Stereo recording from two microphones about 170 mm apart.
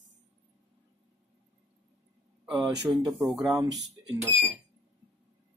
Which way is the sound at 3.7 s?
90° right.